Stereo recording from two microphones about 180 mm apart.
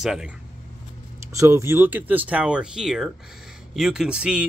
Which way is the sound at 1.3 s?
15° right (ahead or behind).